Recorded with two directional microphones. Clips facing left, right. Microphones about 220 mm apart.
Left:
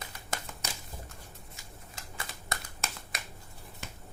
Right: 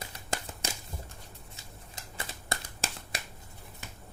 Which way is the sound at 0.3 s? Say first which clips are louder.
Right 3 dB; 30° right (ahead or behind).